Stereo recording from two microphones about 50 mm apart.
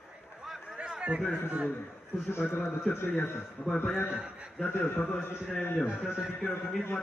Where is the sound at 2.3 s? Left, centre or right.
Left.